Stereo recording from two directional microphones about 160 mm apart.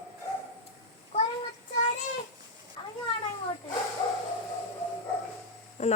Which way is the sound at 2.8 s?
30° left (ahead or behind).